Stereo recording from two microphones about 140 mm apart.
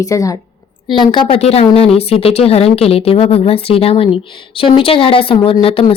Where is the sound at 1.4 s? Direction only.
50° left (ahead or behind).